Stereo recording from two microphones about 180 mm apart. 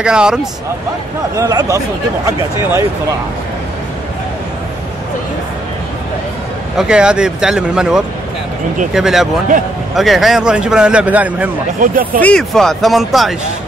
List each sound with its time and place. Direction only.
0.0 s a man's voice: 5° right (ahead or behind)
1.3 s speech: 20° right (ahead or behind)
6.8 s a man's voice: 5° right (ahead or behind)
11.8 s speech: 50° right (ahead or behind)
12.2 s a man's voice: 5° left (ahead or behind)